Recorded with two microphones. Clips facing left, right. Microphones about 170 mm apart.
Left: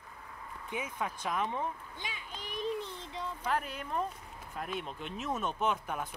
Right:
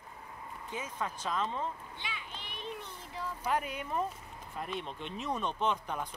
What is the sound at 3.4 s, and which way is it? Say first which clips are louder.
Speech: right 2 dB; 10° right (ahead or behind).